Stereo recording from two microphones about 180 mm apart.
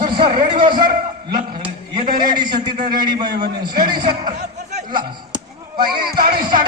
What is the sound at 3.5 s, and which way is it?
Speech, 25° right (ahead or behind).